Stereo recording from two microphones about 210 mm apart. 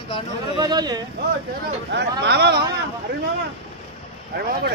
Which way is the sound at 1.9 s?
55° right (ahead or behind).